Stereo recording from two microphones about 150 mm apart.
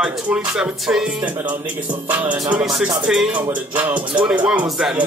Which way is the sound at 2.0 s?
10° right (ahead or behind).